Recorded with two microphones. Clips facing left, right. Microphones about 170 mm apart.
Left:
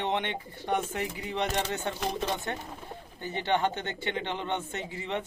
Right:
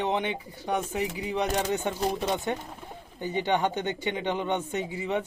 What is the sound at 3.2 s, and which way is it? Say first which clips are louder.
Speech: right 2 dB; 15° right (ahead or behind).